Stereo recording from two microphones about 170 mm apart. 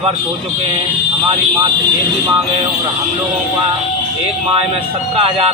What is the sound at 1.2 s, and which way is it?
Speech, 30° right (ahead or behind).